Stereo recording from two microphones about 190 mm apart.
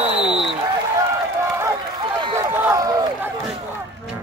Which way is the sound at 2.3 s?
15° right (ahead or behind).